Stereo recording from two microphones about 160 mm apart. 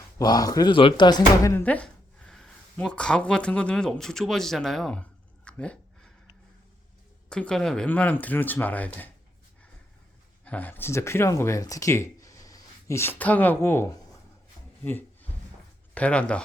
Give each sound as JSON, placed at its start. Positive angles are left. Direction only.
{"t": 0.2, "sound": "speech", "side_deg": 25}
{"t": 5.5, "sound": "a sound", "side_deg": 5}
{"t": 7.3, "sound": "speech", "side_deg": 5}
{"t": 10.4, "sound": "speech", "side_deg": 10}
{"t": 14.8, "sound": "a sound", "side_deg": 10}
{"t": 16.0, "sound": "speech", "side_deg": 5}